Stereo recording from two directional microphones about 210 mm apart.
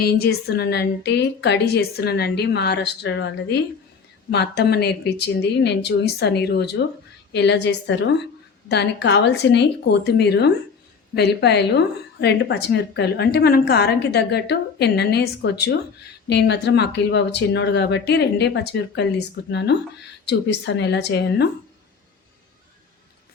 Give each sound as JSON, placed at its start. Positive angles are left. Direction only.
{"t": 0.0, "sound": "a woman's voice", "side_deg": 50}